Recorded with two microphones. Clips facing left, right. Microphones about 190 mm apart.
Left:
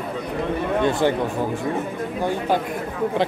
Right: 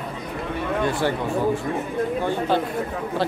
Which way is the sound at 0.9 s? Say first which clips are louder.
Left 4 dB; 20° left (ahead or behind).